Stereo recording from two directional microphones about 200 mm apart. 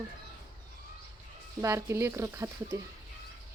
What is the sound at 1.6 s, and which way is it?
Speech, 15° right (ahead or behind).